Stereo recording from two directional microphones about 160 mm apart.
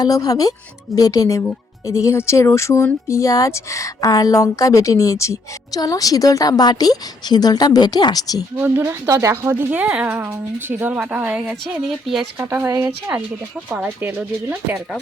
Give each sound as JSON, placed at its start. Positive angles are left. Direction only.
{"t": 0.0, "sound": "speech", "side_deg": 20}
{"t": 8.5, "sound": "a woman's voice", "side_deg": -10}
{"t": 12.4, "sound": "a woman's voice", "side_deg": -15}